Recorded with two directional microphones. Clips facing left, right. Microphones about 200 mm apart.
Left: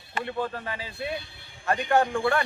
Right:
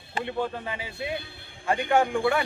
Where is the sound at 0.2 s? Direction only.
15° right (ahead or behind).